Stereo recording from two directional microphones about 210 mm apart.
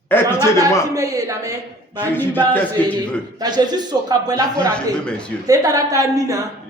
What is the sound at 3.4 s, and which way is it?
A man's voice, 20° right (ahead or behind).